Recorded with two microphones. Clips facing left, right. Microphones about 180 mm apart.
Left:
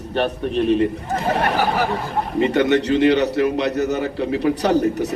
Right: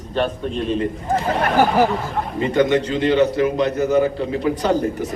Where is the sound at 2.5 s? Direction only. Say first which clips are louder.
Right 1 dB; 70° left (ahead or behind).